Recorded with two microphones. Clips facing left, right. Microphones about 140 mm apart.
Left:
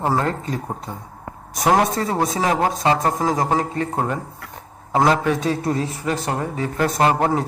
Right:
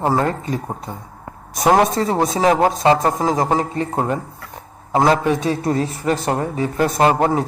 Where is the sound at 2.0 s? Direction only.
25° right (ahead or behind).